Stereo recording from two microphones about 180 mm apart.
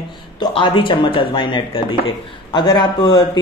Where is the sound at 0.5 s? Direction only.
30° left (ahead or behind).